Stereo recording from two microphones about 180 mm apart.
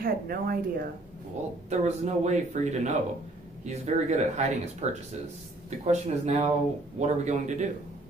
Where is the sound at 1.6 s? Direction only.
40° right (ahead or behind).